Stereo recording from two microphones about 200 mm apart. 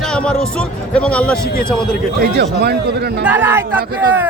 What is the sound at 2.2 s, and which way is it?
A man's voice, 55° right (ahead or behind).